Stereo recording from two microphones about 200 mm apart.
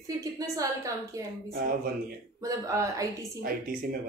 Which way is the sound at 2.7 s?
15° right (ahead or behind).